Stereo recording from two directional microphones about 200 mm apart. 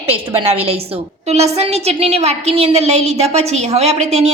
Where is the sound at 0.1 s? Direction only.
30° right (ahead or behind).